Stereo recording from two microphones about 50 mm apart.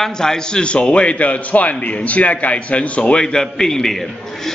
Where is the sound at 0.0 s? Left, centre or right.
Centre.